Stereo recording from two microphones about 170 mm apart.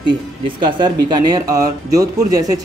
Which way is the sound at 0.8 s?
25° right (ahead or behind).